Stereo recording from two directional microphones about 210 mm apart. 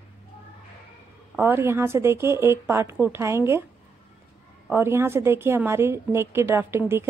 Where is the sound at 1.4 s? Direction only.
10° right (ahead or behind).